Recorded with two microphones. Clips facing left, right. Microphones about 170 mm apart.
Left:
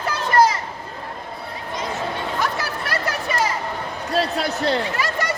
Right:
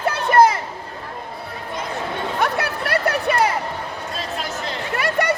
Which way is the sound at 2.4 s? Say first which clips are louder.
Right 3 dB; 60° right (ahead or behind).